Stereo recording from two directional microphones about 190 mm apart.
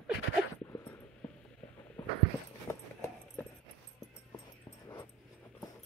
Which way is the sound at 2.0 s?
10° left (ahead or behind).